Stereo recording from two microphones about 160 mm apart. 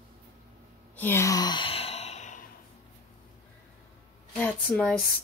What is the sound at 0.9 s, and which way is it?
Sigh, 15° left (ahead or behind).